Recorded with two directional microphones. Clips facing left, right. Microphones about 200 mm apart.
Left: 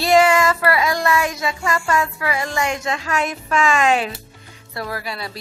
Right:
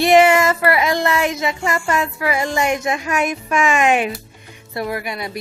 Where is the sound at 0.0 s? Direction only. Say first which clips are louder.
Right 2 dB; 20° right (ahead or behind).